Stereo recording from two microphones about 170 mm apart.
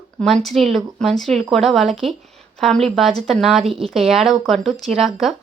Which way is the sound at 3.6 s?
35° right (ahead or behind).